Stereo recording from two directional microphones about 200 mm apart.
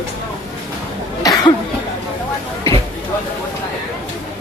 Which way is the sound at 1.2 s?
20° left (ahead or behind).